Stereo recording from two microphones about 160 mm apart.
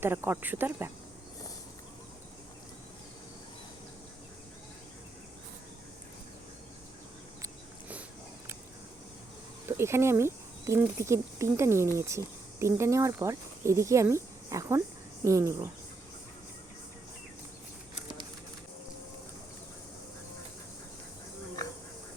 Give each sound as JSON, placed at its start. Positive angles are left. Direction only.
{"t": 0.0, "sound": "speech", "side_deg": -15}
{"t": 7.4, "sound": "a sound", "side_deg": -10}
{"t": 9.6, "sound": "speech", "side_deg": -15}